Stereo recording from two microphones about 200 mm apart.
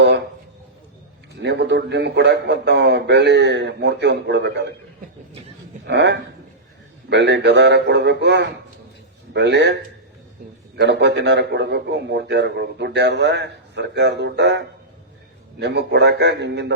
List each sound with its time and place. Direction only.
1.4 s a man's voice: 60° right (ahead or behind)
5.9 s a man's voice: 60° right (ahead or behind)
10.8 s a man's voice: 60° right (ahead or behind)